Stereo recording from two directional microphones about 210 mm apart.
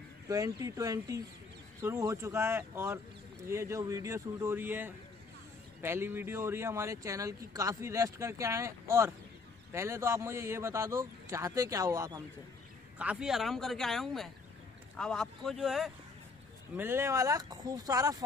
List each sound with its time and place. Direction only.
0.3 s speech: 15° right (ahead or behind); by 15.9 s centre (ahead or behind)
16.7 s speech: 10° right (ahead or behind)